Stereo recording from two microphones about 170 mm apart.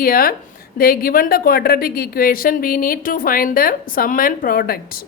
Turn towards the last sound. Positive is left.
turn(degrees=60)  # may be behind; listen again after turning